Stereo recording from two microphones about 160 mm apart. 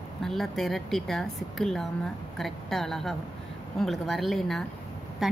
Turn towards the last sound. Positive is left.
turn(degrees=0)  # may be behind; listen again after turning